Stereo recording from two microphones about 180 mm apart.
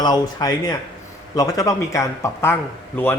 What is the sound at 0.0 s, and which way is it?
A man's voice, 20° left (ahead or behind).